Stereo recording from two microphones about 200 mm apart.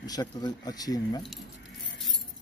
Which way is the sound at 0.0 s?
20° left (ahead or behind).